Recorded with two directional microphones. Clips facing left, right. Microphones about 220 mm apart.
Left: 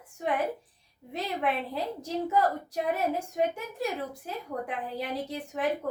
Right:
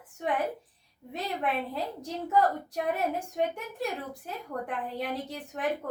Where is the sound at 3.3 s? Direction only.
Centre (ahead or behind).